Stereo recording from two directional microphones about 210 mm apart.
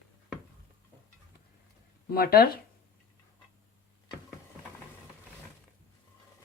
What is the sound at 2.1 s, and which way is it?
Speech, 45° left (ahead or behind).